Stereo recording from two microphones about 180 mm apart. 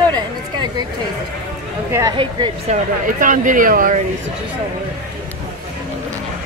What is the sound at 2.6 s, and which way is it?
Speech, 45° right (ahead or behind).